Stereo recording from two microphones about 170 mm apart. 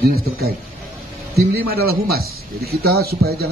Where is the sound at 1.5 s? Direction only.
65° right (ahead or behind).